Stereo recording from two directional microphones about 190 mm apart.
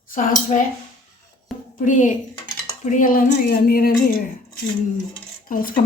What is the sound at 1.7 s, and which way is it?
Speech, 45° left (ahead or behind).